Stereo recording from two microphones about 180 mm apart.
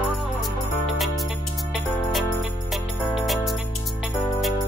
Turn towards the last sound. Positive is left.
turn(degrees=0)  # may be behind; listen again after turning